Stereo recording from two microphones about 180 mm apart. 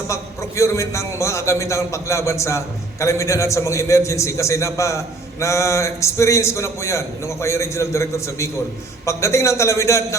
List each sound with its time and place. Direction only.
0.1 s a man's voice: 15° left (ahead or behind)